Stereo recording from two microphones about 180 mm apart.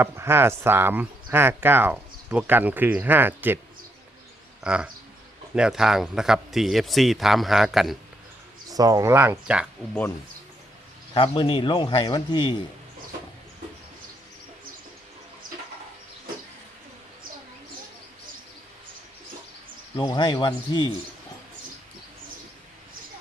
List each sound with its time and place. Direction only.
0.0 s speech: 15° right (ahead or behind)
4.6 s speech: 5° right (ahead or behind)
8.7 s speech: 20° right (ahead or behind)
11.1 s speech: 30° left (ahead or behind)
20.0 s speech: 25° left (ahead or behind)